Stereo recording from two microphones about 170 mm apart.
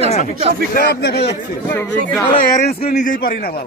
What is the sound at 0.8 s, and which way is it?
Speech, 70° left (ahead or behind).